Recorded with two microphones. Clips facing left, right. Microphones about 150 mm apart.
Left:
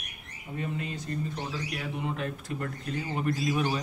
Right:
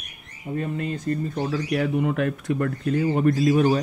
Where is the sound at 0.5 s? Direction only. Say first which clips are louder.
Right 6 dB; 50° right (ahead or behind).